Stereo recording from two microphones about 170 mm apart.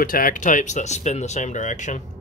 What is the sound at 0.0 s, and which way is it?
Speech, 55° left (ahead or behind).